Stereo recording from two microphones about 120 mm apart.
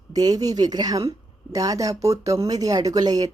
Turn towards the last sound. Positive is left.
turn(degrees=-30)  # may be behind; listen again after turning